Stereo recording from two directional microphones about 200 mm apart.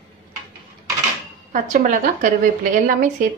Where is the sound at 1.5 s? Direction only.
45° right (ahead or behind).